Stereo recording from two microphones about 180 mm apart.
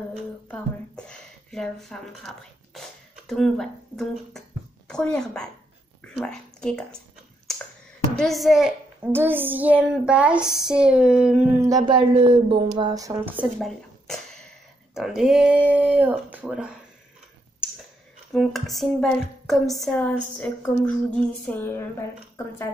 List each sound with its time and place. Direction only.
0.5 s a woman's voice: 5° left (ahead or behind)
8.2 s a woman's voice: centre (ahead or behind)
11.6 s speech: 20° right (ahead or behind)
13.6 s a sound: centre (ahead or behind)
15.0 s speech: 5° right (ahead or behind)
18.3 s a woman's voice: centre (ahead or behind)